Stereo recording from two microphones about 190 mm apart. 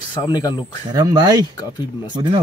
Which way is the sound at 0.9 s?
20° right (ahead or behind).